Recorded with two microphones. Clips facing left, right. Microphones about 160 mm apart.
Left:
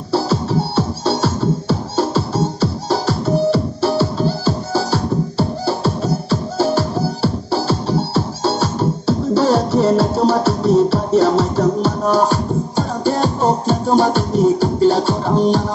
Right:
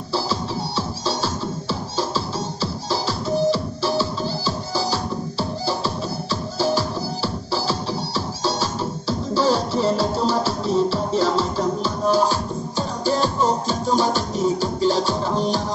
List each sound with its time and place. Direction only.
0.1 s music: 60° left (ahead or behind)